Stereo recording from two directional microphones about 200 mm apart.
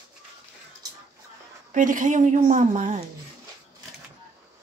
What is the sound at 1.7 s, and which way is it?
Speech, 40° right (ahead or behind).